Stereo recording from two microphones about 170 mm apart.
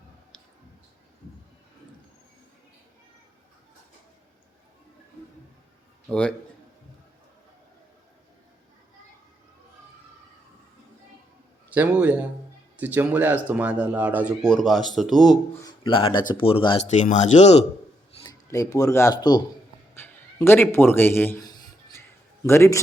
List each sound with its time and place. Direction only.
6.1 s a man's voice: 5° left (ahead or behind)
11.7 s a man's voice: 10° right (ahead or behind)
14.4 s speech: 5° left (ahead or behind)
15.8 s speech: 30° left (ahead or behind)
16.8 s speech: 45° left (ahead or behind)
18.2 s a man's voice: 20° left (ahead or behind)
21.5 s a sound: 25° left (ahead or behind)
22.4 s a man's voice: 15° left (ahead or behind)